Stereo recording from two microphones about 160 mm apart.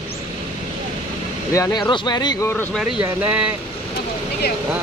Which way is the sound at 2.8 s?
10° right (ahead or behind).